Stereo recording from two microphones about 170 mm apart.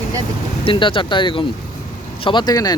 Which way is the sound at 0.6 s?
30° left (ahead or behind).